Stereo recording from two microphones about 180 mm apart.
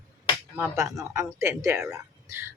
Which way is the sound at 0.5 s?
15° right (ahead or behind).